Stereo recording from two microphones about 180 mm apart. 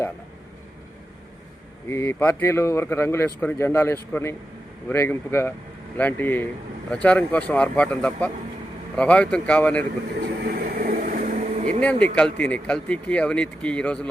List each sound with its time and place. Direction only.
1.9 s speech: 15° left (ahead or behind)
10.2 s vehicle: 60° right (ahead or behind); by 11.8 s 40° right (ahead or behind)
11.8 s speech: 5° left (ahead or behind)